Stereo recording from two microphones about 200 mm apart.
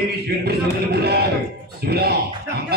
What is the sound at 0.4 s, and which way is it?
Music, 50° right (ahead or behind).